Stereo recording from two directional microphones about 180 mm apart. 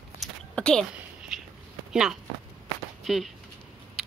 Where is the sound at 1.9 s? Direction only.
Centre (ahead or behind).